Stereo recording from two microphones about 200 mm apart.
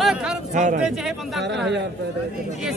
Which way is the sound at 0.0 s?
Centre (ahead or behind).